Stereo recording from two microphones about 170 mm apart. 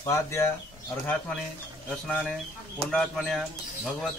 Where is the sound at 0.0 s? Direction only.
15° left (ahead or behind).